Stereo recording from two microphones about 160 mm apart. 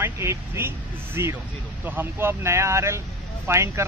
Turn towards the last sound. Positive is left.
turn(degrees=-15)  # may be behind; listen again after turning